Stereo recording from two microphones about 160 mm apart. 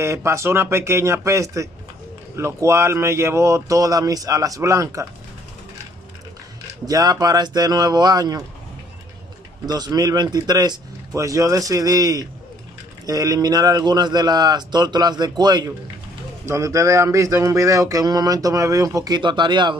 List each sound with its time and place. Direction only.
0.0 s speech: 15° right (ahead or behind)
6.9 s speech: 25° right (ahead or behind)
9.7 s speech: 25° right (ahead or behind)